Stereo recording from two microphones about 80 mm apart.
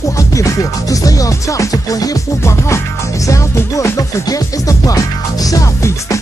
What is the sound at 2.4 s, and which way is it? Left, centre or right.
Music, left.